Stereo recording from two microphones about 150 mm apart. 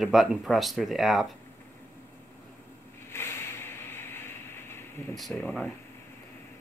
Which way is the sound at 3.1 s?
15° left (ahead or behind).